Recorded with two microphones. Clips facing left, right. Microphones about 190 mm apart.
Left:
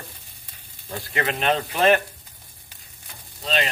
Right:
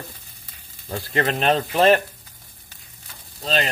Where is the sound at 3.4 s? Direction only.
40° right (ahead or behind).